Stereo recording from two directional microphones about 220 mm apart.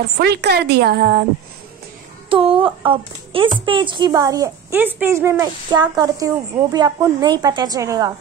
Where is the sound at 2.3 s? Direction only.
25° right (ahead or behind).